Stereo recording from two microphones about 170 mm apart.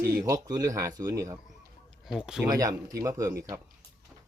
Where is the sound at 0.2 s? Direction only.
20° right (ahead or behind).